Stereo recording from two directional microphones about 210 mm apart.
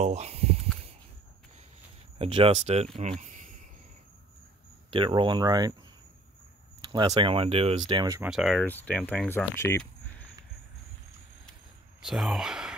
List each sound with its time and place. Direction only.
0.0 s snake: 30° right (ahead or behind)
2.1 s speech: 25° right (ahead or behind)
3.0 s cricket: 35° right (ahead or behind)
4.9 s speech: 25° right (ahead or behind)
6.9 s speech: 20° right (ahead or behind)
8.2 s speech: centre (ahead or behind)
12.0 s speech: centre (ahead or behind)